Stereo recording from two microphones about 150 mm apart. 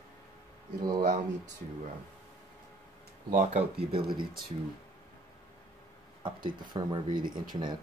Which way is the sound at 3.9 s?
30° right (ahead or behind).